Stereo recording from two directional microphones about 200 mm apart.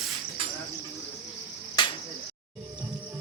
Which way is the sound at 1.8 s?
20° left (ahead or behind).